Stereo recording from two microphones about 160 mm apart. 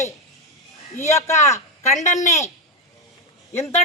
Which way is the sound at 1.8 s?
45° left (ahead or behind).